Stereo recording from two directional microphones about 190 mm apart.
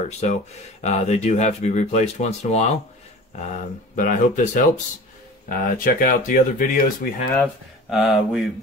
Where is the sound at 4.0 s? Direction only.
45° left (ahead or behind).